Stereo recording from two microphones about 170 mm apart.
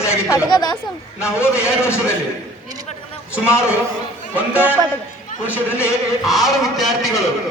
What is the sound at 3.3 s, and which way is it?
Speech, 5° right (ahead or behind).